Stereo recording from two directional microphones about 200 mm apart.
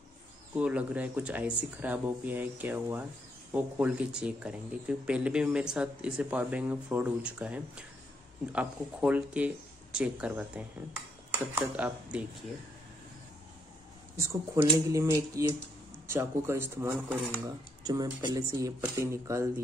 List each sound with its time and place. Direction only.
0.6 s speech: 5° right (ahead or behind)
11.6 s speech: 5° right (ahead or behind)
14.1 s speech: 15° right (ahead or behind)